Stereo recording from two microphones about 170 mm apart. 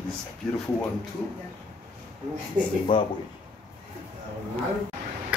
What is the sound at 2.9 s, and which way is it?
Speech, 30° left (ahead or behind).